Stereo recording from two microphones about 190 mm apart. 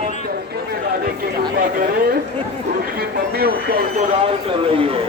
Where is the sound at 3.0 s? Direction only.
55° right (ahead or behind).